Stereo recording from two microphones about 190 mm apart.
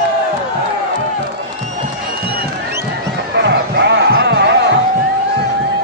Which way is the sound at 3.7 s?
60° right (ahead or behind).